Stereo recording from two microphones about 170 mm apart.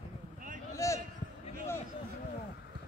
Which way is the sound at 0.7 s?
15° left (ahead or behind).